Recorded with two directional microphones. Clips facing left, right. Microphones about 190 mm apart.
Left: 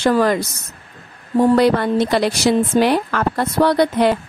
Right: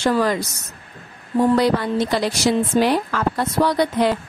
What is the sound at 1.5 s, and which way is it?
A woman's voice, 60° left (ahead or behind).